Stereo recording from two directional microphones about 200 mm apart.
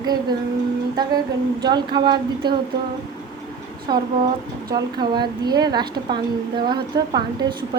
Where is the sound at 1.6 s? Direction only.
20° right (ahead or behind).